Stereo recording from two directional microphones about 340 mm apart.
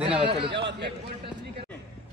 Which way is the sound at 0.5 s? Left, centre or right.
Right.